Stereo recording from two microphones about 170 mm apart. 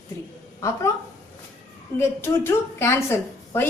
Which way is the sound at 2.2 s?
15° left (ahead or behind).